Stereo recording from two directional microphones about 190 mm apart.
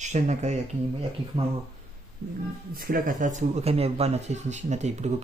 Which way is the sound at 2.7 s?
50° right (ahead or behind).